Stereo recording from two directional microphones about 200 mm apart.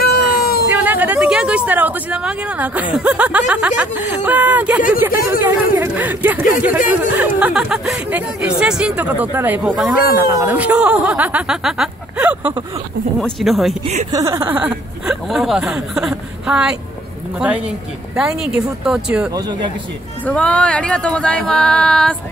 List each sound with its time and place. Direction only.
0.0 s a sound: 50° left (ahead or behind)
0.7 s speech: 10° right (ahead or behind)
10.2 s speech: 15° right (ahead or behind)
14.1 s speech: 15° right (ahead or behind)
18.1 s speech: 5° right (ahead or behind)
19.3 s speech: 20° right (ahead or behind)
20.2 s speech: 5° left (ahead or behind)